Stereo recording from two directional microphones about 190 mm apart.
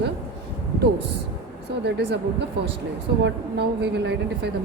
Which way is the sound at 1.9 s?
60° right (ahead or behind).